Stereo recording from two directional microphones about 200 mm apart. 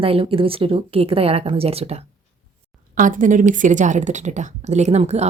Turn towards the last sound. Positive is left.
turn(degrees=-35)  # may be behind; listen again after turning